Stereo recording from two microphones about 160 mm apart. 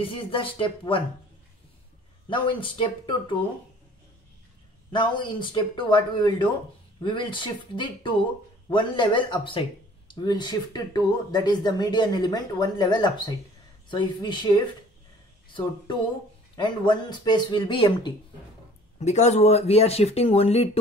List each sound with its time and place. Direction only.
0.0 s speech: 35° left (ahead or behind)
2.2 s speech: 30° left (ahead or behind)
4.9 s speech: 30° left (ahead or behind)
16.5 s speech: 30° left (ahead or behind)
18.9 s speech: 45° left (ahead or behind)